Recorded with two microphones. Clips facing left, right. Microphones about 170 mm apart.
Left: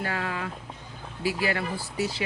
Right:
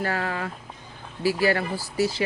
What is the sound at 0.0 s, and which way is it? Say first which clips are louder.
Speech: right 3 dB; 40° right (ahead or behind).